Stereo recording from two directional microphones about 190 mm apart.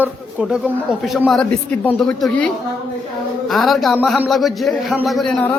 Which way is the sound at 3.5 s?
Centre (ahead or behind).